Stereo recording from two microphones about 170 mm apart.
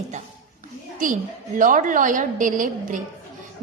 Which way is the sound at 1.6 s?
50° right (ahead or behind).